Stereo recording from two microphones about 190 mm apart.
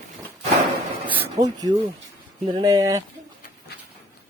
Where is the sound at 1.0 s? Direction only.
10° right (ahead or behind).